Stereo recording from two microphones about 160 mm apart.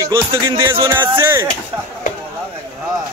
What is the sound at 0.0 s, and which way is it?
Music, 20° right (ahead or behind).